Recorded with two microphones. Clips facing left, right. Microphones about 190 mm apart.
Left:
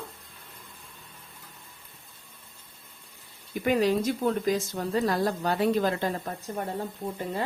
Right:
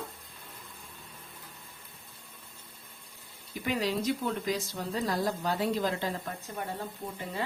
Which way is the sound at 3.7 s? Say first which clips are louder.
Left 6 dB; 50° left (ahead or behind).